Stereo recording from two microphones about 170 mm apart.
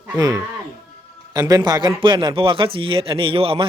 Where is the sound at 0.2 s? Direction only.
20° right (ahead or behind).